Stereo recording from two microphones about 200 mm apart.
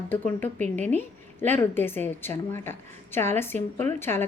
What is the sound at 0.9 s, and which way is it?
A woman's voice, 10° left (ahead or behind).